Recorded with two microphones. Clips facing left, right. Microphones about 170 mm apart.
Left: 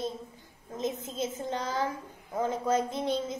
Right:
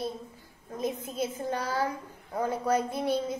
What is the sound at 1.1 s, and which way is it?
A woman's voice, 20° left (ahead or behind).